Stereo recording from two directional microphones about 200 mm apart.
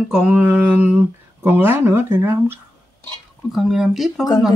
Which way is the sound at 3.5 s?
Centre (ahead or behind).